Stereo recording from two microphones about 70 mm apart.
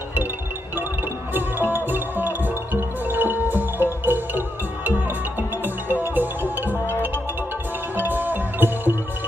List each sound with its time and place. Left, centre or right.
1.3 s music: right
7.9 s music: right